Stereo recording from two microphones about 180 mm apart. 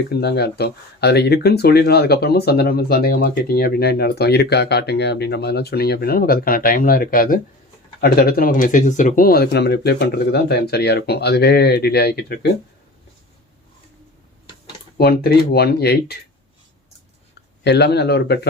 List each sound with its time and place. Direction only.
0.1 s speech: 65° left (ahead or behind)
14.9 s speech: 60° left (ahead or behind)
17.6 s speech: 70° left (ahead or behind)